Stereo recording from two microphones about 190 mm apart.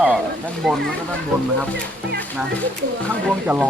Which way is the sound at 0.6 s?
Centre (ahead or behind).